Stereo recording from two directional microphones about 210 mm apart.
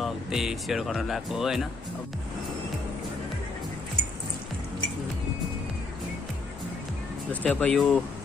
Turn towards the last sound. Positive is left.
turn(degrees=5)  # may be behind; listen again after turning